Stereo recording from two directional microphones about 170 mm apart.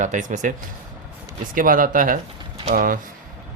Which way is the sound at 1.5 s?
55° right (ahead or behind).